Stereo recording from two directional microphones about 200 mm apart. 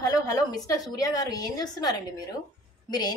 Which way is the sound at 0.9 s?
20° left (ahead or behind).